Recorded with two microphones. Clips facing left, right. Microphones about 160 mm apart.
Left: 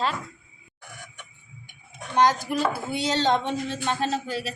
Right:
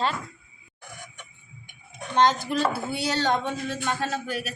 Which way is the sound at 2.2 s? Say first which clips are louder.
Even; 10° left (ahead or behind).